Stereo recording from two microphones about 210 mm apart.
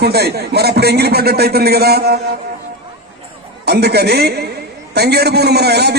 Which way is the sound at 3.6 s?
50° right (ahead or behind).